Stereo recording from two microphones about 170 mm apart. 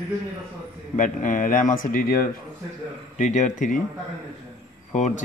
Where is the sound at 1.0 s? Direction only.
50° left (ahead or behind).